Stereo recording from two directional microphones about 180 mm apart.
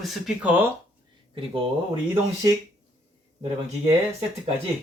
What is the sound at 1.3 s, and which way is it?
Speech, 30° right (ahead or behind).